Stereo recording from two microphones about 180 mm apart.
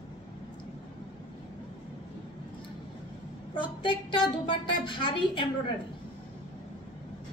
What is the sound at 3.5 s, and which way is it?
A woman's voice, 25° left (ahead or behind).